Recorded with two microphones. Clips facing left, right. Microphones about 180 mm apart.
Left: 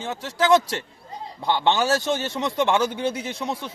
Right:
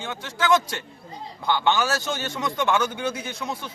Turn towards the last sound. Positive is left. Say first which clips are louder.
# left 3 dB
turn(degrees=30)  # may be behind; listen again after turning